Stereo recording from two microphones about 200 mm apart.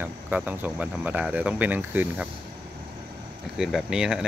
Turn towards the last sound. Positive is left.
turn(degrees=-5)  # may be behind; listen again after turning